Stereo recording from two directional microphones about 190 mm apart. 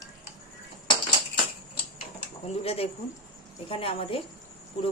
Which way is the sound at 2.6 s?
30° left (ahead or behind).